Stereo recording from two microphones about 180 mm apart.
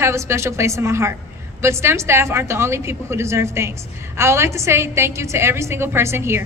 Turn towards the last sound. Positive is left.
turn(degrees=-15)  # may be behind; listen again after turning